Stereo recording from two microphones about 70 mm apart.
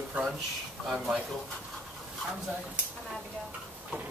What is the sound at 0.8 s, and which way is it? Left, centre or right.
Speech, centre.